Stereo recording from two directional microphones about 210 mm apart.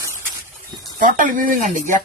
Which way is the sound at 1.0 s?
40° right (ahead or behind).